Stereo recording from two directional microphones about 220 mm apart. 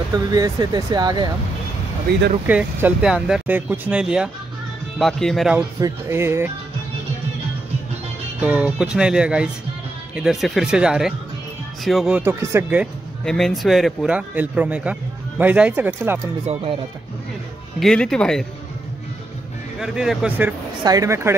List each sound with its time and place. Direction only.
0.3 s speech: 15° right (ahead or behind)
2.4 s speech: 5° right (ahead or behind)
5.8 s speech: 15° right (ahead or behind)
8.4 s speech: 5° right (ahead or behind)
17.7 s speech: centre (ahead or behind)
19.8 s speech: centre (ahead or behind)